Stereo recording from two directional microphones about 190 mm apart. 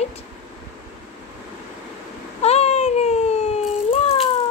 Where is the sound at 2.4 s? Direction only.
35° left (ahead or behind).